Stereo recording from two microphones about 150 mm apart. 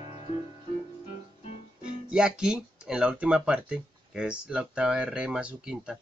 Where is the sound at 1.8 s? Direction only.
5° right (ahead or behind).